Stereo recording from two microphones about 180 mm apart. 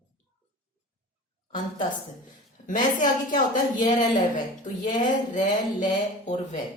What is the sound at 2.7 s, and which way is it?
A woman's voice, 45° left (ahead or behind).